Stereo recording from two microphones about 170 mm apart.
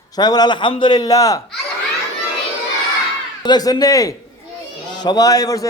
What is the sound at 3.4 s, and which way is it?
A man's voice, 25° left (ahead or behind).